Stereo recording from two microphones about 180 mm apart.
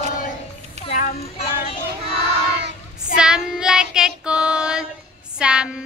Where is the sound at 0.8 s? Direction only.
35° left (ahead or behind).